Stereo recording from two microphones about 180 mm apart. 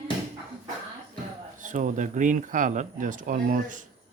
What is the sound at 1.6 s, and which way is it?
Speech, 45° right (ahead or behind).